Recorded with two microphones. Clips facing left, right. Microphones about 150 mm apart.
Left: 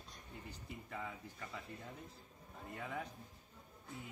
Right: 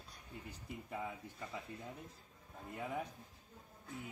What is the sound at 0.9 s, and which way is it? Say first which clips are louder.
Speech: right 3 dB; 10° right (ahead or behind).